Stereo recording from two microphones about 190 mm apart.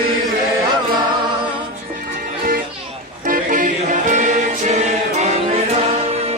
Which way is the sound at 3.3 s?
45° right (ahead or behind).